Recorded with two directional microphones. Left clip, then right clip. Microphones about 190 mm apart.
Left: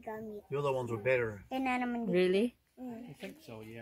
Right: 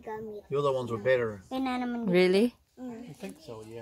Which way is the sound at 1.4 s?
Centre (ahead or behind).